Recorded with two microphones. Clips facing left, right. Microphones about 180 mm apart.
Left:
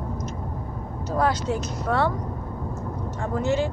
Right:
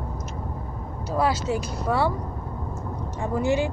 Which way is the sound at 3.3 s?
15° right (ahead or behind).